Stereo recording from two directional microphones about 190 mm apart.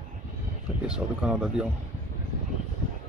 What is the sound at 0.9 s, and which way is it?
Speech, 5° right (ahead or behind).